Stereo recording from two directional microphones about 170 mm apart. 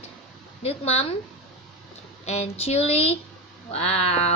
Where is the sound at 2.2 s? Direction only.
35° left (ahead or behind).